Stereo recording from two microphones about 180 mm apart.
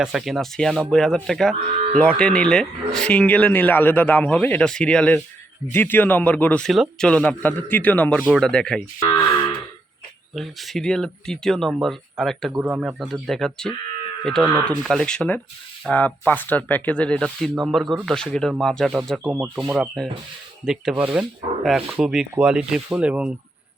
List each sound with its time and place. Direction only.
0.0 s speech: centre (ahead or behind)
9.0 s cattle: 25° left (ahead or behind)
10.3 s speech: centre (ahead or behind)